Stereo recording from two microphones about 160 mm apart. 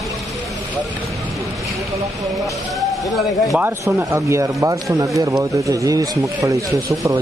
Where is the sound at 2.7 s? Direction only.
Centre (ahead or behind).